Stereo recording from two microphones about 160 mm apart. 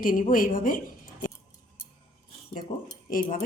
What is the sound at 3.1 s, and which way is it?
Speech, 60° left (ahead or behind).